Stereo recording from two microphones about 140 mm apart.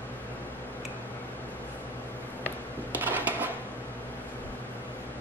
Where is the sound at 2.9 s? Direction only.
15° right (ahead or behind).